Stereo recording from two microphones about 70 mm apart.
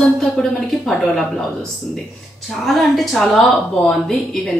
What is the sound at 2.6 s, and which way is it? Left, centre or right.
Speech, centre.